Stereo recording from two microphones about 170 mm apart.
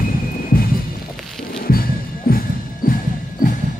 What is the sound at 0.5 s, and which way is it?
Music, 60° left (ahead or behind).